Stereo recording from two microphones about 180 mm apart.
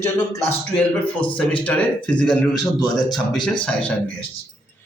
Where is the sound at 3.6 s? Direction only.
5° left (ahead or behind).